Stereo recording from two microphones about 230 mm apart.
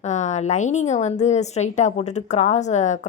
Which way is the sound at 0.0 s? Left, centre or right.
Left.